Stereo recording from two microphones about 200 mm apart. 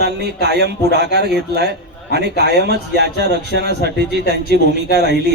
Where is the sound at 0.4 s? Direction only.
55° right (ahead or behind).